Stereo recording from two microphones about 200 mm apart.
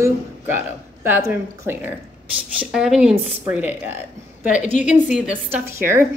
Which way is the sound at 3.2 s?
30° right (ahead or behind).